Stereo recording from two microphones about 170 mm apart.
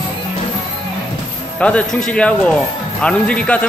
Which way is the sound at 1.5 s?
5° left (ahead or behind).